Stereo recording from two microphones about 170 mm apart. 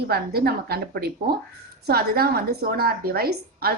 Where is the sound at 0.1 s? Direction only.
65° right (ahead or behind).